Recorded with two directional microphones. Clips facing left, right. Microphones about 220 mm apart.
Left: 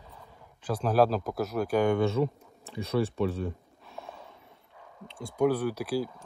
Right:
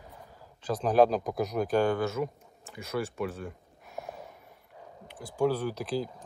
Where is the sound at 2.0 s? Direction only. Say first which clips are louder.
Left 4 dB; 30° left (ahead or behind).